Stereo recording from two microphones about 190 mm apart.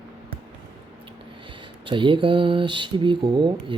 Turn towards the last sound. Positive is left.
turn(degrees=-25)  # may be behind; listen again after turning